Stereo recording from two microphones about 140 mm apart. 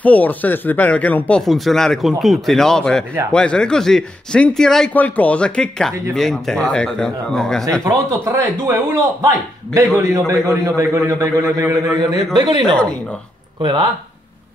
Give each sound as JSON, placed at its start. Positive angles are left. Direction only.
{"t": 0.0, "sound": "speech", "side_deg": 10}
{"t": 7.8, "sound": "a man's voice", "side_deg": -20}
{"t": 12.4, "sound": "speech", "side_deg": -35}